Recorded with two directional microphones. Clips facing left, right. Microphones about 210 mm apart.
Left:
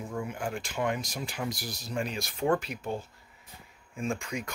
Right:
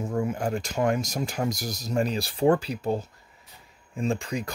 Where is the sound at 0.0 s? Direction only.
40° right (ahead or behind).